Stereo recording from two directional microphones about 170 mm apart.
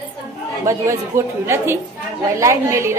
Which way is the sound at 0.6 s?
15° right (ahead or behind).